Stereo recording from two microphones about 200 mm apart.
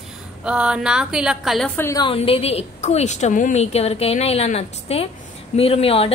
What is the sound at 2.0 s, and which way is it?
A woman's voice, 30° left (ahead or behind).